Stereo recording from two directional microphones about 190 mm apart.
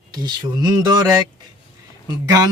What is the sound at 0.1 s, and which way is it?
Speech, 20° right (ahead or behind).